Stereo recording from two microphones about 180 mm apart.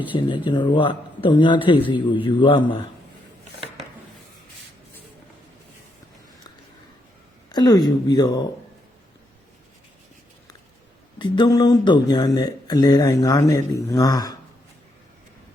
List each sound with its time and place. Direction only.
0.1 s speech: 25° left (ahead or behind)
7.5 s speech: 20° left (ahead or behind)
11.2 s speech: 25° left (ahead or behind)